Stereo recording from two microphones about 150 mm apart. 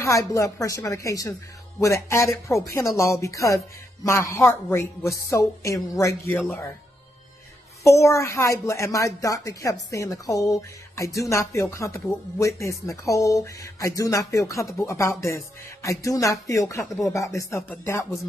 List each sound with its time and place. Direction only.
0.0 s speech: 20° left (ahead or behind)
7.8 s speech: 20° left (ahead or behind)